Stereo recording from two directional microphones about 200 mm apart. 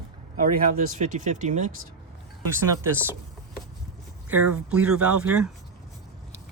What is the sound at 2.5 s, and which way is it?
Speech, 10° right (ahead or behind).